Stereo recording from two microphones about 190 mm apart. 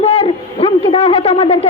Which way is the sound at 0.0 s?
30° left (ahead or behind).